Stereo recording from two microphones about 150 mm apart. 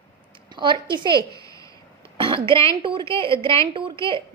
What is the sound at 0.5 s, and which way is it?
Speech, 30° right (ahead or behind).